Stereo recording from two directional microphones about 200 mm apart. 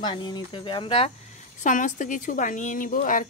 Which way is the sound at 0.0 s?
20° left (ahead or behind).